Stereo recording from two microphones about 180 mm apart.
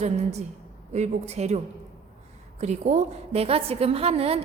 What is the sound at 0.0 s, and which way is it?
A woman's voice, 35° right (ahead or behind).